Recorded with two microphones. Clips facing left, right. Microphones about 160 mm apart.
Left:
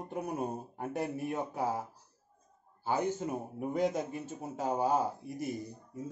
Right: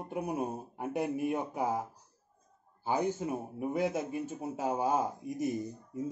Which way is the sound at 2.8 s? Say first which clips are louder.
Right 1 dB; 15° right (ahead or behind).